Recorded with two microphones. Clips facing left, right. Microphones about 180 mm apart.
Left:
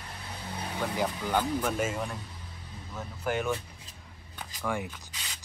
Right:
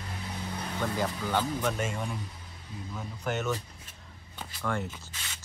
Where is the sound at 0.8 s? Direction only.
10° left (ahead or behind).